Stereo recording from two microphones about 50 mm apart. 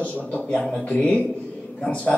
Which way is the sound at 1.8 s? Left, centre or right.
Left.